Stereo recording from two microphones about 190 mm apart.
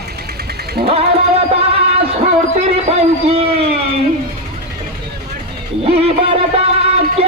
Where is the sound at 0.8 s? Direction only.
55° right (ahead or behind).